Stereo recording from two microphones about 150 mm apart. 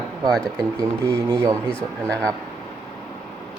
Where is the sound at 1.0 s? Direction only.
15° right (ahead or behind).